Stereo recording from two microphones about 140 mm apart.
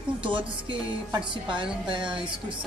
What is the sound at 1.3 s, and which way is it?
Speech, 35° right (ahead or behind).